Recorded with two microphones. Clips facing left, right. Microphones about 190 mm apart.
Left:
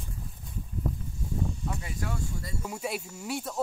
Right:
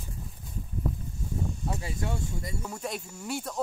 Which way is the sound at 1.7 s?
25° right (ahead or behind).